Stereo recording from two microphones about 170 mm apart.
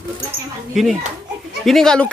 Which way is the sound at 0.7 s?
5° right (ahead or behind).